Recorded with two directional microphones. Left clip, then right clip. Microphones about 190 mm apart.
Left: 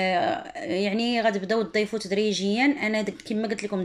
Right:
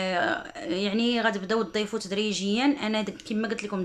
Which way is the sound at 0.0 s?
Centre (ahead or behind).